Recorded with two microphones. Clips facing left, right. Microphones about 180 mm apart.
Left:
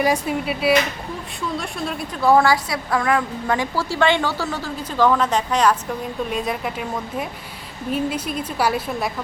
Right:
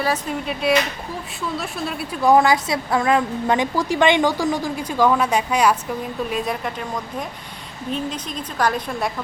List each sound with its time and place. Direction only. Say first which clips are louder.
0.0 s a woman's voice: left 3 dB; 10° left (ahead or behind)
2.2 s a woman's voice: right 1 dB; 15° right (ahead or behind)
6.3 s a woman's voice: even; centre (ahead or behind)